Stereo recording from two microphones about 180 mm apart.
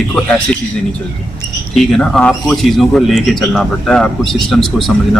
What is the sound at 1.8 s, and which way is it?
Speech, 5° left (ahead or behind).